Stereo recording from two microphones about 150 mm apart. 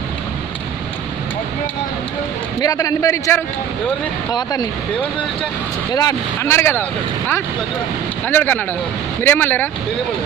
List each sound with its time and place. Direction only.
2.6 s a man's voice: 25° left (ahead or behind)
5.9 s speech: 25° left (ahead or behind)
8.3 s speech: 10° left (ahead or behind)